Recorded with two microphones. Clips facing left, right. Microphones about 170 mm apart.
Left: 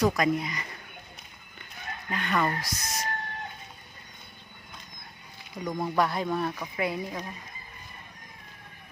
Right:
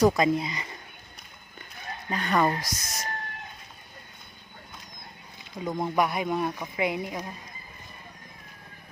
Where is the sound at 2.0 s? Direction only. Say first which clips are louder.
Right 3 dB; 35° right (ahead or behind).